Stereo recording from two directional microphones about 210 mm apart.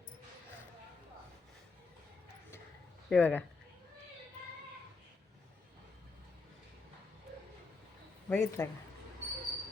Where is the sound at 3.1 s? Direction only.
5° left (ahead or behind).